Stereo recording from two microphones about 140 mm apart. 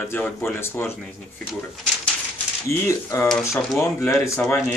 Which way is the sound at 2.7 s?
20° left (ahead or behind).